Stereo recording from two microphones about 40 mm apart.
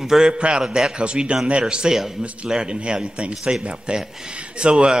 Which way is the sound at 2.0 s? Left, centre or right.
Centre.